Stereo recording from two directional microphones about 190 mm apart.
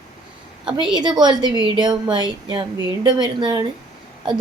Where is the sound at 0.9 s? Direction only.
20° right (ahead or behind).